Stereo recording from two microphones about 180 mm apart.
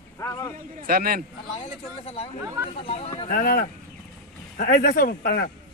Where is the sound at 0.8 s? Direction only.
55° right (ahead or behind).